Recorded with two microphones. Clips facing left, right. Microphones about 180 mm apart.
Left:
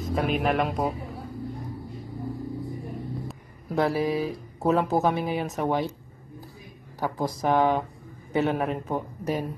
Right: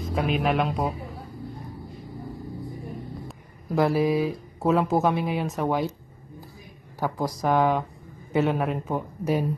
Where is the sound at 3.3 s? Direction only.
Centre (ahead or behind).